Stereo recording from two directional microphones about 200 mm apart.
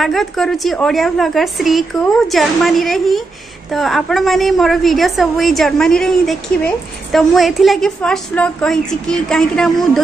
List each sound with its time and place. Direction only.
0.0 s a woman's voice: centre (ahead or behind)